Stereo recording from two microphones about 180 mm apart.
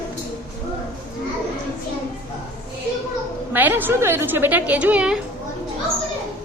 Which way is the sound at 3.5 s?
10° right (ahead or behind).